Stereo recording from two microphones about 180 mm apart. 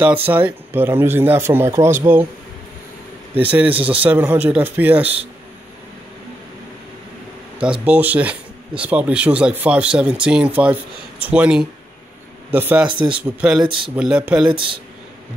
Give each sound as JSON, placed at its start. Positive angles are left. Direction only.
{"t": 0.3, "sound": "speech", "side_deg": -10}
{"t": 3.4, "sound": "speech", "side_deg": -10}
{"t": 5.0, "sound": "a man's voice", "side_deg": -35}
{"t": 7.6, "sound": "speech", "side_deg": -5}
{"t": 14.5, "sound": "speech", "side_deg": -30}